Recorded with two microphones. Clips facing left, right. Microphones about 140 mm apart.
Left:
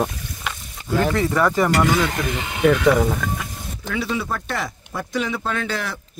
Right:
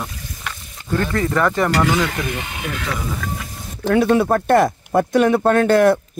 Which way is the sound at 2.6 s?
75° left (ahead or behind).